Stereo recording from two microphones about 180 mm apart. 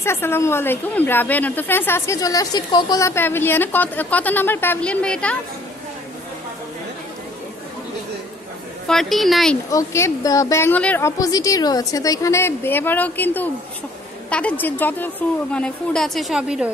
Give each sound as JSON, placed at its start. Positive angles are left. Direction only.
{"t": 0.0, "sound": "a woman's voice", "side_deg": 15}
{"t": 8.8, "sound": "a woman's voice", "side_deg": 0}
{"t": 9.7, "sound": "a woman's voice", "side_deg": 15}